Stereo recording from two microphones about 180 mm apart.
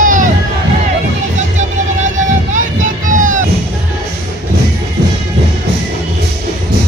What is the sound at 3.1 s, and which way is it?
Music, 45° right (ahead or behind).